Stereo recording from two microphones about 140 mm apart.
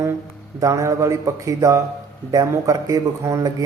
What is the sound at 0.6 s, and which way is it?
A man's voice, 20° right (ahead or behind).